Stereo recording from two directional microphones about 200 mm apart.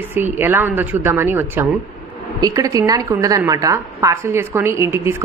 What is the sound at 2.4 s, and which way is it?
A woman's voice, 15° right (ahead or behind).